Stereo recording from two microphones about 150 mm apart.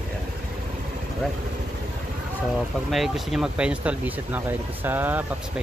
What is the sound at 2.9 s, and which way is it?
Speech, centre (ahead or behind).